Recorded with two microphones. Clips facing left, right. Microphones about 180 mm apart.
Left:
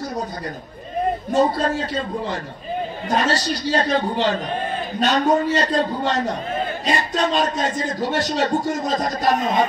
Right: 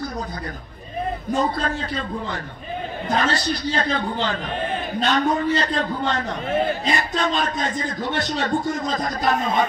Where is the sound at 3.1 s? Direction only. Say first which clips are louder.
Left 1 dB; 40° left (ahead or behind).